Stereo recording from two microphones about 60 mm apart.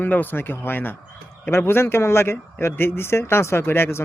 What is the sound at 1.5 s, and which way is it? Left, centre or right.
Speech, left.